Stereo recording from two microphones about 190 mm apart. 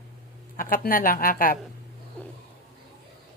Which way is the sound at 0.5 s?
45° left (ahead or behind).